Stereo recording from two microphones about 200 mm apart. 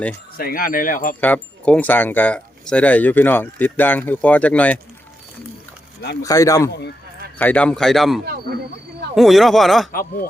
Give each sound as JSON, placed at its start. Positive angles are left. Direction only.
{"t": 0.3, "sound": "speech", "side_deg": 45}
{"t": 1.2, "sound": "speech", "side_deg": 5}
{"t": 6.2, "sound": "speech", "side_deg": 15}
{"t": 6.7, "sound": "speech", "side_deg": 55}
{"t": 7.3, "sound": "speech", "side_deg": 5}
{"t": 8.2, "sound": "speech", "side_deg": -50}
{"t": 9.1, "sound": "speech", "side_deg": 0}
{"t": 9.9, "sound": "speech", "side_deg": 45}